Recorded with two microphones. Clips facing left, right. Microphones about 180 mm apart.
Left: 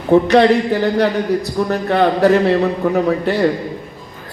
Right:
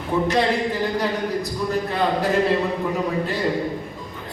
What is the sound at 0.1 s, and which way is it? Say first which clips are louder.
A man's voice: left 10 dB; 70° left (ahead or behind).